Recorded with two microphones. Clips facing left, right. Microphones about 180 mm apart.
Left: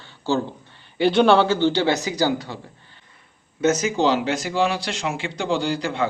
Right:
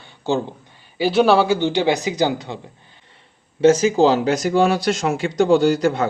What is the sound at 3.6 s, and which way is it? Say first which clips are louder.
Speech: right 6 dB; 30° right (ahead or behind).